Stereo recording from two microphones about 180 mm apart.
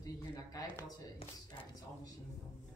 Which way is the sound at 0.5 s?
20° left (ahead or behind).